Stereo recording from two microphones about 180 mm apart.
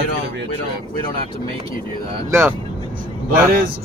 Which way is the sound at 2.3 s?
10° right (ahead or behind).